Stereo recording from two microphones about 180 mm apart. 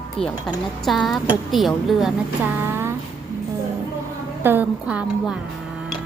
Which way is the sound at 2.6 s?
15° right (ahead or behind).